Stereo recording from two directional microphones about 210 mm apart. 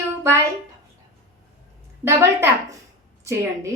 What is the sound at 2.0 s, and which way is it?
Speech, 10° right (ahead or behind).